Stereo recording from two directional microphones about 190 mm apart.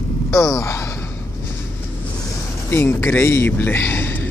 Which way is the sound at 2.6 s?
10° left (ahead or behind).